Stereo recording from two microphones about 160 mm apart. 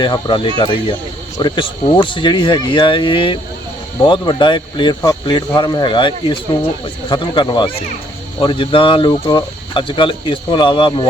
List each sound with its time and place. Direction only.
0.0 s speech: 30° left (ahead or behind)